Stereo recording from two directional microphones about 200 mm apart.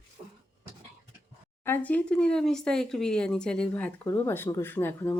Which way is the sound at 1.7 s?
10° left (ahead or behind).